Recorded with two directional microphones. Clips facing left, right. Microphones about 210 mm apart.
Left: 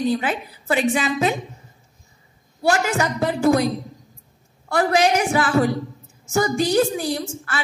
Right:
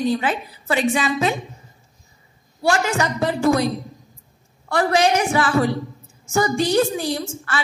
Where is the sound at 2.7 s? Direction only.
45° left (ahead or behind).